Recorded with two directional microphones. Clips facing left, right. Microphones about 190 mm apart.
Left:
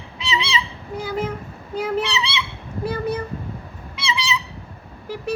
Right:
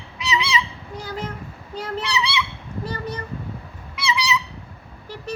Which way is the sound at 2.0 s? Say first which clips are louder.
Even; 25° left (ahead or behind).